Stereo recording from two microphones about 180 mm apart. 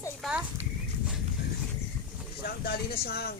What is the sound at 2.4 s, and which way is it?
Speech, 60° left (ahead or behind).